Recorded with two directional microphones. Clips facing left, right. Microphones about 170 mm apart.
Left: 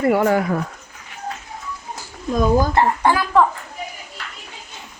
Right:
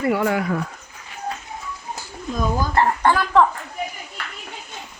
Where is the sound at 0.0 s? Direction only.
45° left (ahead or behind).